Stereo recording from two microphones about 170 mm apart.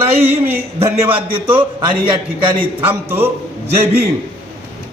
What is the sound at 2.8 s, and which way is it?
Speech, 15° right (ahead or behind).